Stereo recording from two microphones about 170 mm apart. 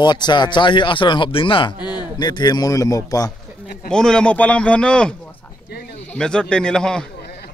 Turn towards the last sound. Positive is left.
turn(degrees=5)  # may be behind; listen again after turning